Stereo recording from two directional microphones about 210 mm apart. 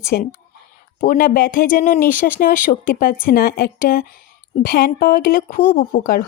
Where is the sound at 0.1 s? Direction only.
50° left (ahead or behind).